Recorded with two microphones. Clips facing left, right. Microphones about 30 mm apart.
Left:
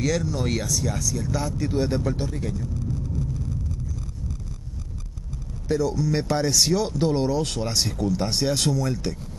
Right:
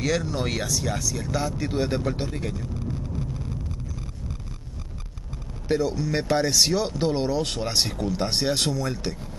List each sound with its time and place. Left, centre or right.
0.0 s speech: right
5.7 s speech: right